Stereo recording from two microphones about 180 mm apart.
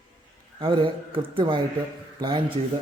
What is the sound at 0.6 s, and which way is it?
A man's voice, 25° right (ahead or behind).